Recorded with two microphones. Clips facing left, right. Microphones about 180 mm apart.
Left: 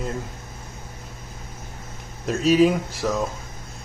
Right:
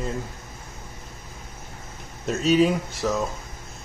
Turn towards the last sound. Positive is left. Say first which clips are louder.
# left 1 dB
turn(degrees=0)  # may be behind; listen again after turning